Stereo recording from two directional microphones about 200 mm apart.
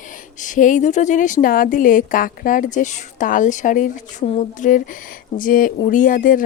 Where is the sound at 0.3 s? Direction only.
40° left (ahead or behind).